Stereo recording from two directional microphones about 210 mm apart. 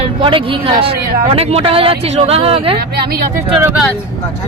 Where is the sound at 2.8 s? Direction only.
50° right (ahead or behind).